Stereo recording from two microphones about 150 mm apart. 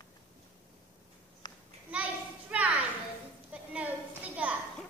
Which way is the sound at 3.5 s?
10° right (ahead or behind).